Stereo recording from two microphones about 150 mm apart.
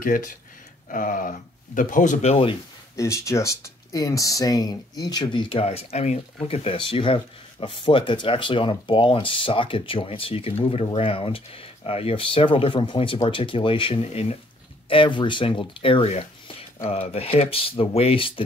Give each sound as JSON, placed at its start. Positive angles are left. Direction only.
{"t": 0.0, "sound": "speech", "side_deg": 65}
{"t": 3.0, "sound": "speech", "side_deg": 20}